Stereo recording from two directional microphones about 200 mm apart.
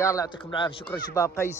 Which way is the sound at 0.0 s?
15° left (ahead or behind).